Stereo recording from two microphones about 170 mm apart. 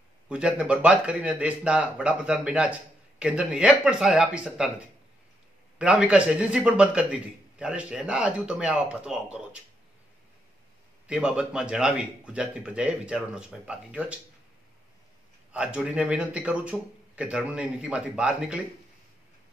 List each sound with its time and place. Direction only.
0.3 s speech: 5° right (ahead or behind)
11.1 s speech: 5° right (ahead or behind)
15.5 s speech: 5° right (ahead or behind)